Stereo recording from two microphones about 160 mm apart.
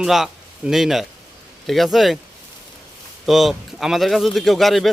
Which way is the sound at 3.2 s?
Centre (ahead or behind).